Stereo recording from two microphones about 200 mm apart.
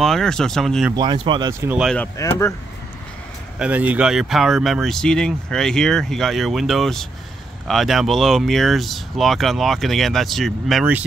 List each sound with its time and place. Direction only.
0.0 s speech: centre (ahead or behind)
0.9 s speech: 20° right (ahead or behind)
1.5 s speech: 15° right (ahead or behind)
1.8 s speech: centre (ahead or behind)
2.1 s speech: 15° left (ahead or behind)
3.5 s speech: 5° right (ahead or behind)